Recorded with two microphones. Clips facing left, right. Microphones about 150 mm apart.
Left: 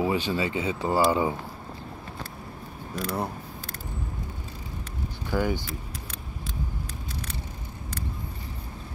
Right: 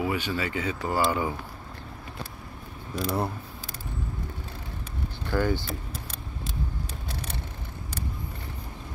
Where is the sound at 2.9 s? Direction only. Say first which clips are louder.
Right 2 dB; 5° right (ahead or behind).